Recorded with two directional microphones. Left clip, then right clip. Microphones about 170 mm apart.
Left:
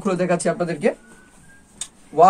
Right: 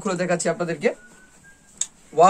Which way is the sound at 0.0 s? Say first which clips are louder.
Left 2 dB; 20° right (ahead or behind).